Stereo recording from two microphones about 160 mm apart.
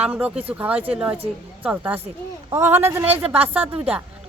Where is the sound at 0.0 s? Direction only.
10° right (ahead or behind).